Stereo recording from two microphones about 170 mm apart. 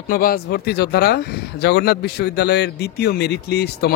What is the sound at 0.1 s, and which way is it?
Speech, 60° left (ahead or behind).